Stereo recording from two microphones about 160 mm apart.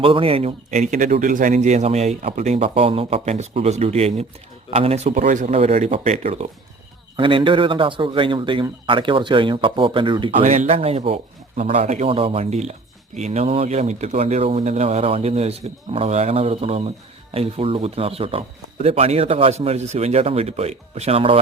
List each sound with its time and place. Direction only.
0.0 s a man's voice: 35° right (ahead or behind)
7.2 s a man's voice: 30° right (ahead or behind)
10.4 s a man's voice: 50° right (ahead or behind)